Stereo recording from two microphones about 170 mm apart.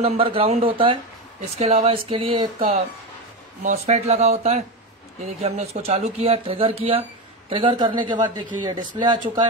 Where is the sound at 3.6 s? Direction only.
45° right (ahead or behind).